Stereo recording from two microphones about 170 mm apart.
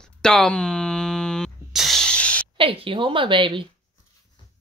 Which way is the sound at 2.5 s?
30° right (ahead or behind).